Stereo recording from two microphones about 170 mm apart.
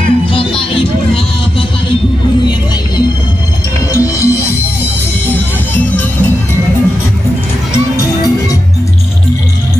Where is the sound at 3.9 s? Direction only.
20° left (ahead or behind).